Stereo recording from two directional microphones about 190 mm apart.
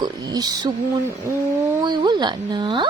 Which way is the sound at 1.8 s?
25° right (ahead or behind).